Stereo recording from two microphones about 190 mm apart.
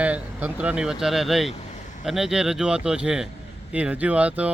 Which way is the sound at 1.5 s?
40° left (ahead or behind).